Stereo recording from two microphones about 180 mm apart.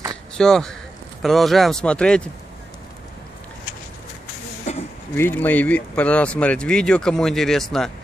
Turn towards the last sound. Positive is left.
turn(degrees=0)  # may be behind; listen again after turning